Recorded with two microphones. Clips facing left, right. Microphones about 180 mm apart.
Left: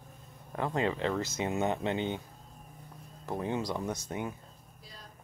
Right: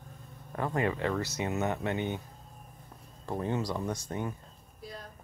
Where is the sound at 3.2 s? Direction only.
10° left (ahead or behind).